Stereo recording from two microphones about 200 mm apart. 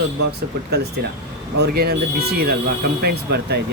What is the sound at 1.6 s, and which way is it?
Speech, 55° right (ahead or behind).